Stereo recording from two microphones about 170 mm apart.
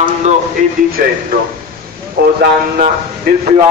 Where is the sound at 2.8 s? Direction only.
50° right (ahead or behind).